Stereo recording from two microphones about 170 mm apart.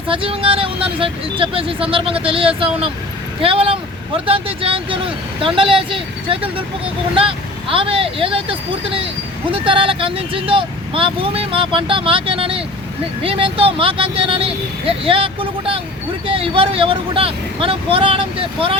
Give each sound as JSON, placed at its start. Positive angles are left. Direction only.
{"t": 0.1, "sound": "speech", "side_deg": -30}